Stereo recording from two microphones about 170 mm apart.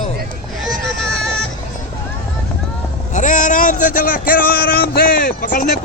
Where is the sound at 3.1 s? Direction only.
50° left (ahead or behind).